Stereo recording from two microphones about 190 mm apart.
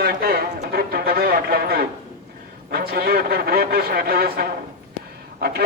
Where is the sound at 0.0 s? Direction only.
55° right (ahead or behind).